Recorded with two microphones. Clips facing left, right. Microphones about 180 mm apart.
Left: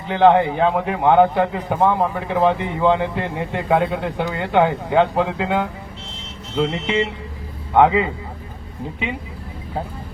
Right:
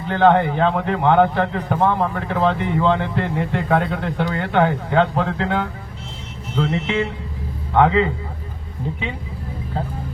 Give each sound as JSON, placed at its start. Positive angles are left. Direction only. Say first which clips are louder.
{"t": 0.1, "sound": "a man's voice", "louder": "left 1 dB", "side_deg": 15}